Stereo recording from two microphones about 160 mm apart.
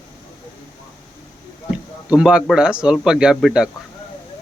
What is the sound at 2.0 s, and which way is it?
A man's voice, 5° right (ahead or behind).